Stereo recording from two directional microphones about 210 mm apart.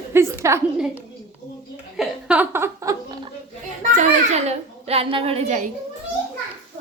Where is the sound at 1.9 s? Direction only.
5° right (ahead or behind).